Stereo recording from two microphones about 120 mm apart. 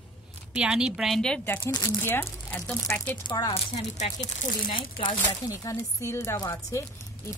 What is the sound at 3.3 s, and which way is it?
Speech, 35° left (ahead or behind).